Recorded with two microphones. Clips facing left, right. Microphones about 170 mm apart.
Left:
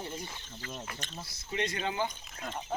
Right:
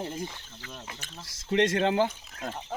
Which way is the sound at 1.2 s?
90° right.